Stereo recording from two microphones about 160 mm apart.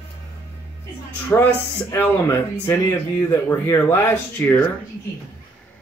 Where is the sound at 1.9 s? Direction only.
15° left (ahead or behind).